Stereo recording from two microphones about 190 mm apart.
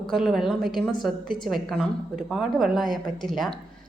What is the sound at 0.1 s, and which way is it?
A woman's voice, centre (ahead or behind).